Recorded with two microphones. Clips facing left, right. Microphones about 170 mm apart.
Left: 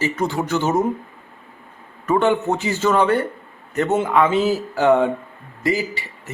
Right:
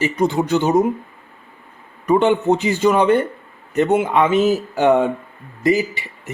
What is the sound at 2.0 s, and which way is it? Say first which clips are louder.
Speech: right 3 dB; 20° right (ahead or behind).